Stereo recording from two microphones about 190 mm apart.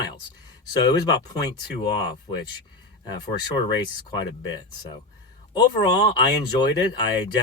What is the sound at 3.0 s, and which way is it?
Speech, 20° left (ahead or behind).